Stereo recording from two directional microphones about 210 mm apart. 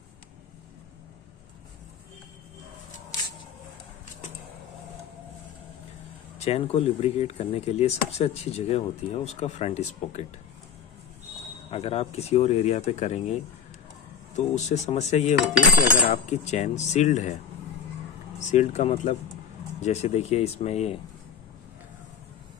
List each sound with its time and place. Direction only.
6.3 s chop: 30° left (ahead or behind)
11.7 s speech: 30° left (ahead or behind)
18.4 s speech: 35° left (ahead or behind)